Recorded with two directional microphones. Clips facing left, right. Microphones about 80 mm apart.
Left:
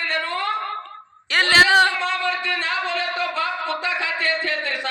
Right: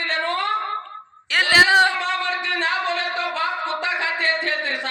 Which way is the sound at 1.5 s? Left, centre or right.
Centre.